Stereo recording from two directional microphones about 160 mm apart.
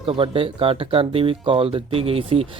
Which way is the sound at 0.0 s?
35° right (ahead or behind).